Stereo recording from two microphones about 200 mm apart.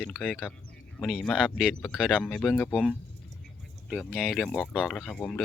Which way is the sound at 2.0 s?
Centre (ahead or behind).